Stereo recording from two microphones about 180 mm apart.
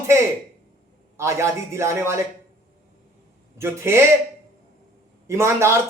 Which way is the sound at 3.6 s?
15° right (ahead or behind).